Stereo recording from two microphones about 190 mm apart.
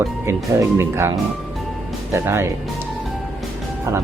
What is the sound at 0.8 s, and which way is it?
Speech, 15° right (ahead or behind).